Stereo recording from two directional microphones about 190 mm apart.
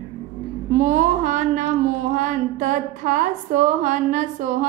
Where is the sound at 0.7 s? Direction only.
40° right (ahead or behind).